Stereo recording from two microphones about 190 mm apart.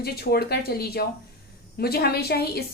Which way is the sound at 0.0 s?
55° left (ahead or behind).